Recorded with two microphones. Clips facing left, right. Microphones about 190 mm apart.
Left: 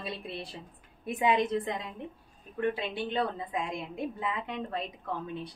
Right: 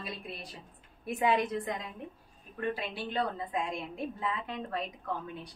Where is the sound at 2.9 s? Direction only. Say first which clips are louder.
Left 2 dB; 20° left (ahead or behind).